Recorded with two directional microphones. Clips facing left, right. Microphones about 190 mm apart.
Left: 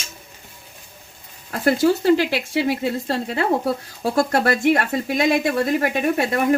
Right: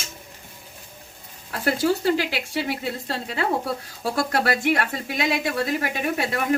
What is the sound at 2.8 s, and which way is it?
Speech, 45° left (ahead or behind).